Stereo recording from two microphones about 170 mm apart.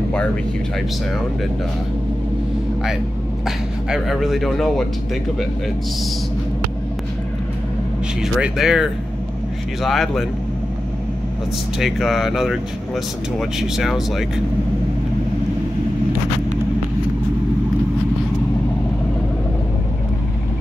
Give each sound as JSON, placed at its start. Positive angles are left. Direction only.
{"t": 3.4, "sound": "speech", "side_deg": 0}
{"t": 8.2, "sound": "speech", "side_deg": -5}
{"t": 11.8, "sound": "speech", "side_deg": 0}